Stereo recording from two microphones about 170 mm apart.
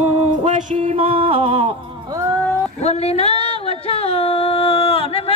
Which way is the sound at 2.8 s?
40° left (ahead or behind).